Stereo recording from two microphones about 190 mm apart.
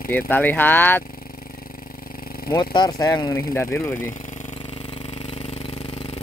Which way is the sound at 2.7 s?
20° left (ahead or behind).